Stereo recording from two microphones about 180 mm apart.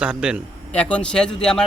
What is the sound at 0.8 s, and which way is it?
Speech, 5° left (ahead or behind).